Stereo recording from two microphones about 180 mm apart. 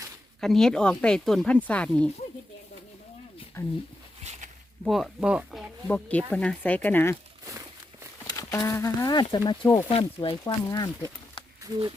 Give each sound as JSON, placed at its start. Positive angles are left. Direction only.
{"t": 0.3, "sound": "speech", "side_deg": 0}
{"t": 3.6, "sound": "speech", "side_deg": 15}
{"t": 4.2, "sound": "a sound", "side_deg": -40}
{"t": 4.9, "sound": "speech", "side_deg": 0}
{"t": 5.9, "sound": "speech", "side_deg": 10}
{"t": 8.3, "sound": "speech", "side_deg": 20}